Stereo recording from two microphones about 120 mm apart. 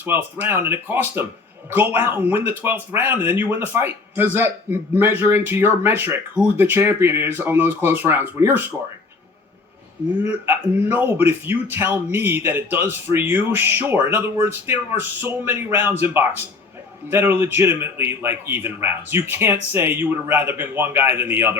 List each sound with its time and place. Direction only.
0.0 s a man's voice: 15° right (ahead or behind)
10.2 s a man's voice: 15° right (ahead or behind)